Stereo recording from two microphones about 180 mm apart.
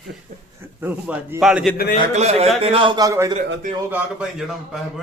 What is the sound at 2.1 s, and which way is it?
A man's voice, 35° right (ahead or behind).